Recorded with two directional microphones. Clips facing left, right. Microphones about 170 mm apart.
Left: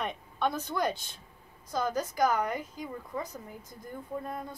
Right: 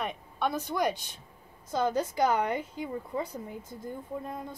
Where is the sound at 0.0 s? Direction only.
10° right (ahead or behind).